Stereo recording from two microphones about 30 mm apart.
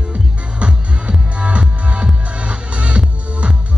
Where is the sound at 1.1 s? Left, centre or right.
Right.